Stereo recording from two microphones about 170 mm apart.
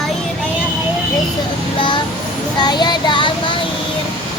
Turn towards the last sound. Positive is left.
turn(degrees=30)  # may be behind; listen again after turning